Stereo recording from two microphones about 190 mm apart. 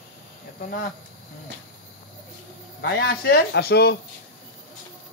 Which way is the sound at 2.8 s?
60° left (ahead or behind).